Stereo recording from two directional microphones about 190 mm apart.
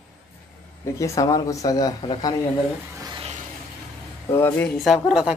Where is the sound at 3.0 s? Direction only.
25° right (ahead or behind).